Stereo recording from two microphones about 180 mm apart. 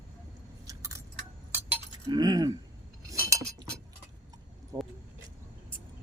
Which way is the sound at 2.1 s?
20° right (ahead or behind).